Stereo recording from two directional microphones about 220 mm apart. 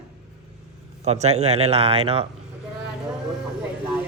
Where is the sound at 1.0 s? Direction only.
30° right (ahead or behind).